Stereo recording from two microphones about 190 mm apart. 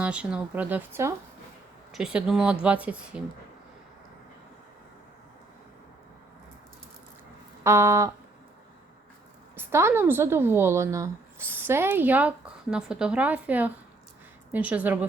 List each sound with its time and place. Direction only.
0.0 s a woman's voice: 5° right (ahead or behind)
7.6 s a woman's voice: 15° right (ahead or behind)
9.6 s a woman's voice: 10° right (ahead or behind)